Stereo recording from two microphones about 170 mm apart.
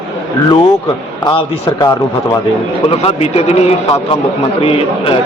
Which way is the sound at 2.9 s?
35° left (ahead or behind).